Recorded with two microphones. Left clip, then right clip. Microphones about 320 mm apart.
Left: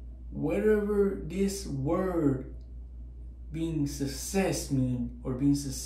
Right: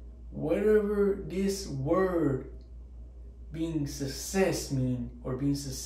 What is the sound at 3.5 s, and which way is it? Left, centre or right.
Speech, centre.